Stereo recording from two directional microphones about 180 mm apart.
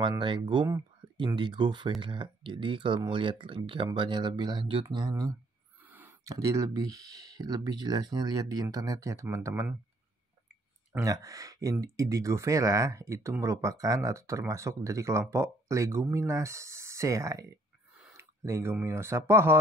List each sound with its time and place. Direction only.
0.2 s speech: 25° right (ahead or behind)
0.7 s a sound: 15° right (ahead or behind)
1.2 s speech: 25° right (ahead or behind)
5.8 s a sound: 10° right (ahead or behind)
6.3 s speech: 20° right (ahead or behind)
10.9 s speech: 15° right (ahead or behind)